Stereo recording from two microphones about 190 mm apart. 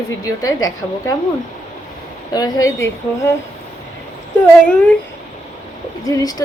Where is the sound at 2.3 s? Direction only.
20° left (ahead or behind).